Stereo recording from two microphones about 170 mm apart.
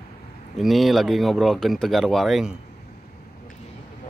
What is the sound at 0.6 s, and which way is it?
A man's voice, centre (ahead or behind).